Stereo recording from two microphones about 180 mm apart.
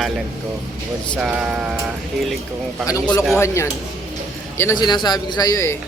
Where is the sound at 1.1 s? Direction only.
5° right (ahead or behind).